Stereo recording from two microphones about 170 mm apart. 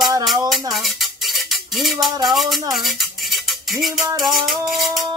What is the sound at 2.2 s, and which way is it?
Music, centre (ahead or behind).